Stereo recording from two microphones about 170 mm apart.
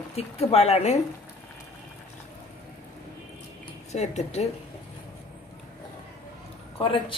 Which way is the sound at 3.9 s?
40° left (ahead or behind).